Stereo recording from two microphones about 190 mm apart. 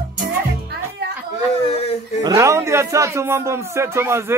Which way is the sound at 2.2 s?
15° right (ahead or behind).